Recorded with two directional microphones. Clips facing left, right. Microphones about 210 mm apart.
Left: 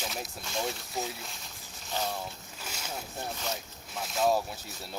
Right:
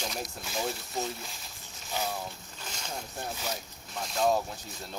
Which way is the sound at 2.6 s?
5° left (ahead or behind).